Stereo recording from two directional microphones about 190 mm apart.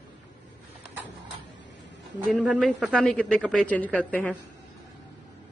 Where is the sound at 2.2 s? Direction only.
5° right (ahead or behind).